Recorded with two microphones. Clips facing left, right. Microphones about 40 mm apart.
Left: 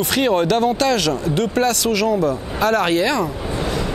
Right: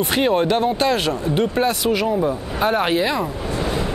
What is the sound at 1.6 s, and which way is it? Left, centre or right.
Speech, left.